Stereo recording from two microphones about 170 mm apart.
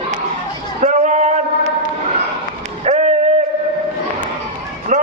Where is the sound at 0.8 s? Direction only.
45° right (ahead or behind).